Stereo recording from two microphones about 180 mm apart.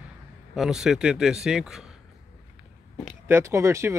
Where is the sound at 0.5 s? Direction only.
Centre (ahead or behind).